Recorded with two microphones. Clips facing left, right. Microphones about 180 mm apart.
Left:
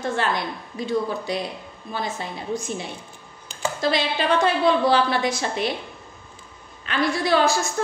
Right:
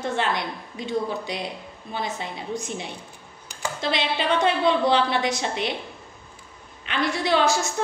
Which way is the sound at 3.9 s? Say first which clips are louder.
Left 1 dB; 20° right (ahead or behind).